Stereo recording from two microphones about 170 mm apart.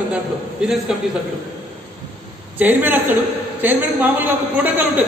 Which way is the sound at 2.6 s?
10° right (ahead or behind).